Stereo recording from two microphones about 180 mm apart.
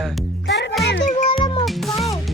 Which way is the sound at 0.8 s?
65° left (ahead or behind).